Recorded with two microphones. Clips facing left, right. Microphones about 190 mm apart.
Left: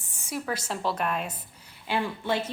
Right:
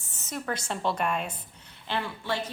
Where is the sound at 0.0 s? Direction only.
15° left (ahead or behind).